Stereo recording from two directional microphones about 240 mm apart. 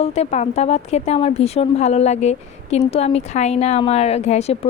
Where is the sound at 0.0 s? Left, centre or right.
Left.